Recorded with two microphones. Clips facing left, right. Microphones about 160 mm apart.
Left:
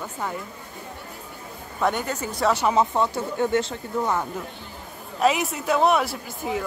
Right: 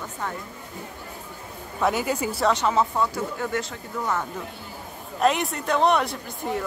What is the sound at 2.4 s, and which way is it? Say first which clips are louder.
Speech: left 2 dB; 10° left (ahead or behind).